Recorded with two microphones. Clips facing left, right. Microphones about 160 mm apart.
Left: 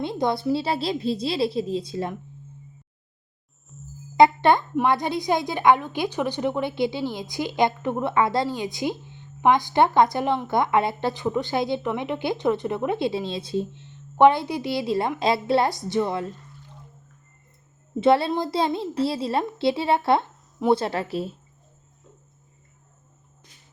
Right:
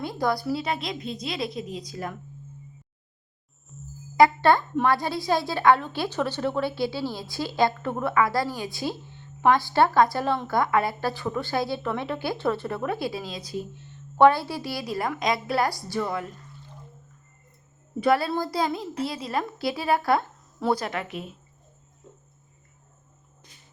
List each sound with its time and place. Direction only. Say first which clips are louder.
0.0 s a woman's voice: left 2 dB; 25° left (ahead or behind)
3.7 s music: even; centre (ahead or behind)
4.2 s a woman's voice: left 2 dB; 20° left (ahead or behind)
18.0 s a woman's voice: left 3 dB; 25° left (ahead or behind)